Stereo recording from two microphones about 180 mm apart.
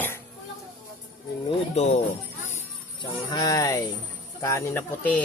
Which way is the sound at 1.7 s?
40° left (ahead or behind).